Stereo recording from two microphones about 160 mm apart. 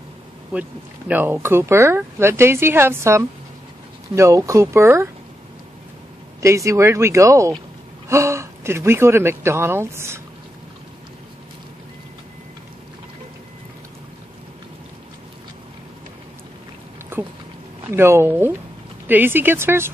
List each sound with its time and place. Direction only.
0.5 s speech: 10° right (ahead or behind)
6.4 s speech: 20° right (ahead or behind)
17.1 s a sound: 15° right (ahead or behind)
17.8 s speech: 15° right (ahead or behind)